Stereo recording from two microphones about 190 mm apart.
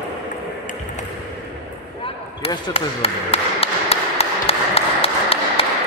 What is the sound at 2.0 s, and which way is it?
Basketball bounce, 30° left (ahead or behind).